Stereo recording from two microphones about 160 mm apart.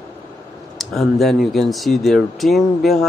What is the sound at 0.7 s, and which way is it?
Speech, centre (ahead or behind).